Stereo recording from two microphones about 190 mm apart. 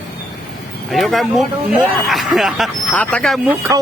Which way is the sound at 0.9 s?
Centre (ahead or behind).